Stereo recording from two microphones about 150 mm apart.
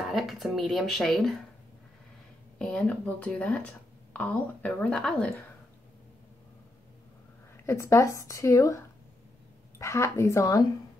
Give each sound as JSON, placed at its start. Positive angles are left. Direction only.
{"t": 0.1, "sound": "speech", "side_deg": 0}
{"t": 2.6, "sound": "speech", "side_deg": 5}
{"t": 7.5, "sound": "speech", "side_deg": 15}